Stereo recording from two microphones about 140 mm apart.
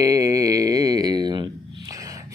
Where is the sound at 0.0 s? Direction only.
25° right (ahead or behind).